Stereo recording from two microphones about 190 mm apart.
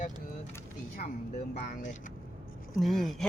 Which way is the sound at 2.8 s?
Centre (ahead or behind).